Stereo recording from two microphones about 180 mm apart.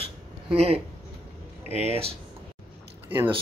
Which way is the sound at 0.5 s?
35° right (ahead or behind).